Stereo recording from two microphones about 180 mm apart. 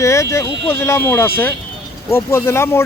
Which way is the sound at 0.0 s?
15° left (ahead or behind).